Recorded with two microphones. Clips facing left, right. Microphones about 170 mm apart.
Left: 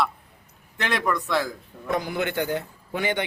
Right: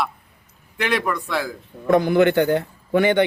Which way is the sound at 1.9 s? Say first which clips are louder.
Right 11 dB; 60° right (ahead or behind).